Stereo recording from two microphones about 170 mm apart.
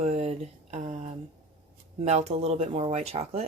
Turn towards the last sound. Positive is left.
turn(degrees=-35)  # may be behind; listen again after turning